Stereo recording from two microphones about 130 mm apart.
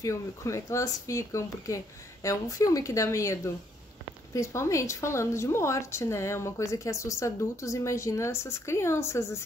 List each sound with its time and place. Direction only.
0.0 s speech: 25° left (ahead or behind)